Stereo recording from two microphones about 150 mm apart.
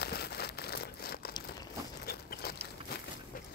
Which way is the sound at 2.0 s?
90° left.